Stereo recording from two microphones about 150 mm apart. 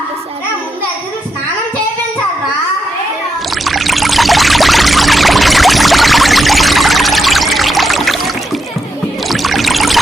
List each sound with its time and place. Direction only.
3.6 s pour: centre (ahead or behind)
9.3 s rowboat: centre (ahead or behind)